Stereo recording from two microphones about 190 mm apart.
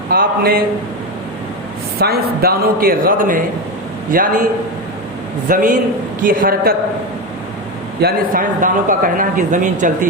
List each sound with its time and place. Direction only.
0.1 s speech: 50° right (ahead or behind)
2.0 s speech: 55° right (ahead or behind)
5.5 s speech: 45° right (ahead or behind)
8.0 s speech: 45° right (ahead or behind)